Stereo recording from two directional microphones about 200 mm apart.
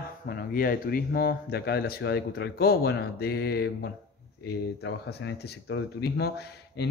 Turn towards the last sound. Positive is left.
turn(degrees=55)  # may be behind; listen again after turning